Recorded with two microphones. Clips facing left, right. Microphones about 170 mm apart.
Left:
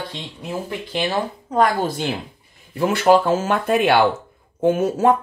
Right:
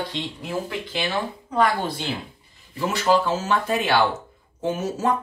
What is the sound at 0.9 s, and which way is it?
Speech, 40° left (ahead or behind).